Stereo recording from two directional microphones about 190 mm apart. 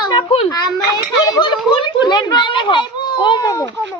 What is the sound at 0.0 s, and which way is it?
A child's voice, 25° left (ahead or behind).